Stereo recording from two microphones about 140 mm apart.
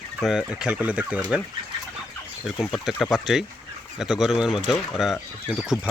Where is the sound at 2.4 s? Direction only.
Centre (ahead or behind).